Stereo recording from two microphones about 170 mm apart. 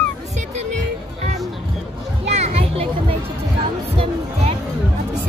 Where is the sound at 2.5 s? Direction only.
35° right (ahead or behind).